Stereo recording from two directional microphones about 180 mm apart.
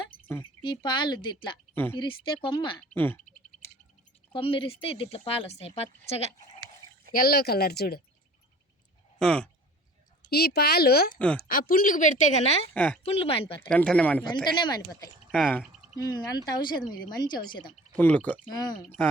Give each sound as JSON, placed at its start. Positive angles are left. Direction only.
{"t": 0.6, "sound": "speech", "side_deg": 25}
{"t": 1.7, "sound": "speech", "side_deg": 10}
{"t": 2.0, "sound": "speech", "side_deg": 30}
{"t": 2.9, "sound": "speech", "side_deg": 10}
{"t": 4.3, "sound": "speech", "side_deg": 30}
{"t": 7.1, "sound": "speech", "side_deg": 55}
{"t": 9.1, "sound": "speech", "side_deg": 5}
{"t": 10.2, "sound": "a woman's voice", "side_deg": 60}
{"t": 12.7, "sound": "speech", "side_deg": 10}
{"t": 13.1, "sound": "speech", "side_deg": 30}
{"t": 13.7, "sound": "speech", "side_deg": 5}
{"t": 14.4, "sound": "speech", "side_deg": 25}
{"t": 16.0, "sound": "speech", "side_deg": 20}
{"t": 17.9, "sound": "speech", "side_deg": 10}